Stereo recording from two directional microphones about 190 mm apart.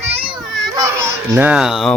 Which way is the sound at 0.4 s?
Centre (ahead or behind).